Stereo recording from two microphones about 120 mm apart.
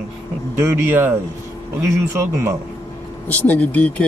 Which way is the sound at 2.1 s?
25° right (ahead or behind).